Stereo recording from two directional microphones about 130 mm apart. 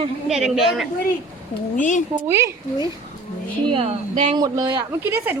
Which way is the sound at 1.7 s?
75° left (ahead or behind).